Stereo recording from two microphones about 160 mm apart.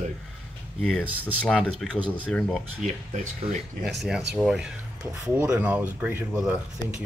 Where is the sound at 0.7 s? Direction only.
5° left (ahead or behind).